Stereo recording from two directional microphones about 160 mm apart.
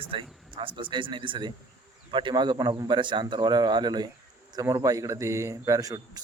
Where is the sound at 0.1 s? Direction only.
35° right (ahead or behind).